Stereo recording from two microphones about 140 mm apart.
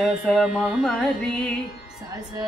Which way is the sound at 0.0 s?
Centre (ahead or behind).